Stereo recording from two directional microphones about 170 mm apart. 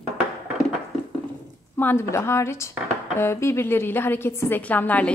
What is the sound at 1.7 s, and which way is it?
Speech, 15° left (ahead or behind).